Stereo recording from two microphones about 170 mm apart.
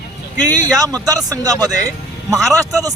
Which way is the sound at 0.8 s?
20° right (ahead or behind).